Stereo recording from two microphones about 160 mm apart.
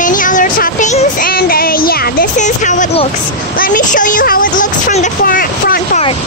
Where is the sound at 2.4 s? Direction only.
50° left (ahead or behind).